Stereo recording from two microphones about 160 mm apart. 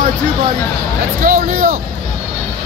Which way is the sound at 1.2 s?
55° right (ahead or behind).